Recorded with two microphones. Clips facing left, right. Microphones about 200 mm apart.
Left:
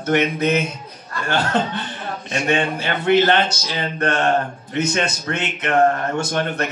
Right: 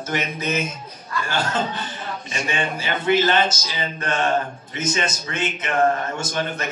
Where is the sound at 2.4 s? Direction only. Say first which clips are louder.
Left 6 dB; 60° left (ahead or behind).